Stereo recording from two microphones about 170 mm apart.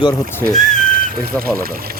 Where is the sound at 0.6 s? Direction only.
50° left (ahead or behind).